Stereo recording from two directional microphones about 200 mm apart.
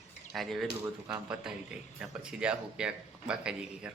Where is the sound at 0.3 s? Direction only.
Centre (ahead or behind).